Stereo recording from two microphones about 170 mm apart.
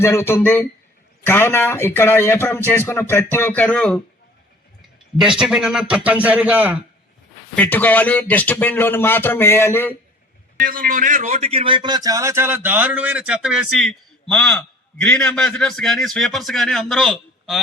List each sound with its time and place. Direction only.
0.0 s speech: 15° left (ahead or behind)
5.2 s a man's voice: 5° right (ahead or behind)
7.5 s speech: 10° left (ahead or behind)
10.6 s a man's voice: 55° right (ahead or behind); by 17.6 s centre (ahead or behind)